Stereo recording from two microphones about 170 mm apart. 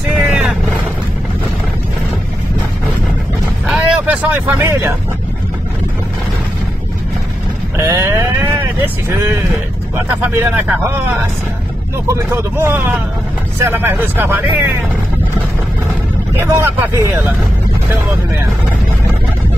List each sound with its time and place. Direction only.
0.1 s vehicle: 10° right (ahead or behind)
3.6 s vehicle: 5° right (ahead or behind)
7.7 s vehicle: 15° right (ahead or behind)
9.9 s speech: 10° right (ahead or behind)
12.1 s speech: 15° right (ahead or behind)
16.3 s speech: 10° right (ahead or behind)